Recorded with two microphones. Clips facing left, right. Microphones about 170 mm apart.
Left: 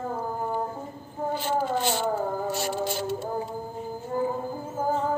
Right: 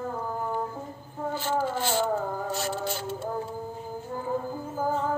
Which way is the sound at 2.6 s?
15° left (ahead or behind).